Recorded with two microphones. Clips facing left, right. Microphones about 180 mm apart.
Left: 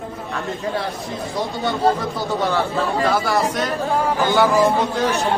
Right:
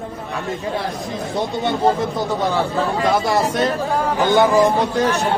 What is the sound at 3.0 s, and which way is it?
Speech, 25° right (ahead or behind).